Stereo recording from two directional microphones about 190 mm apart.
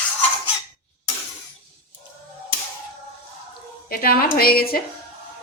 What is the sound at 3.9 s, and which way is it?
Speech, 50° left (ahead or behind).